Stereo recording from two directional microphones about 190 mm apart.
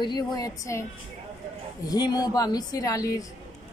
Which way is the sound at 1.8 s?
20° left (ahead or behind).